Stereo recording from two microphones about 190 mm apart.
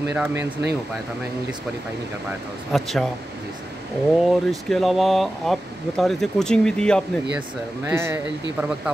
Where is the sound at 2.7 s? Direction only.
Centre (ahead or behind).